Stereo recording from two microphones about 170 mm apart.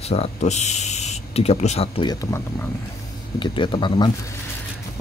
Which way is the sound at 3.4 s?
30° left (ahead or behind).